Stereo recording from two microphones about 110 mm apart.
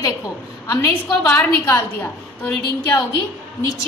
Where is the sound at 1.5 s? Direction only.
20° left (ahead or behind).